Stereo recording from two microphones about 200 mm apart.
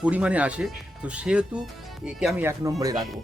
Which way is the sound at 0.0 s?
5° right (ahead or behind).